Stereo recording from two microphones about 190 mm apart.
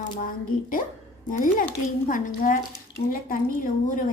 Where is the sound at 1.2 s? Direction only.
45° left (ahead or behind).